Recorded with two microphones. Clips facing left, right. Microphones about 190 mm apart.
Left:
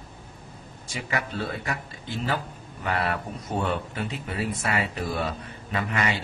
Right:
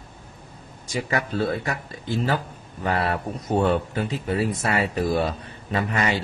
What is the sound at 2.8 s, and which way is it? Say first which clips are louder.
Speech: right 3 dB; 35° right (ahead or behind).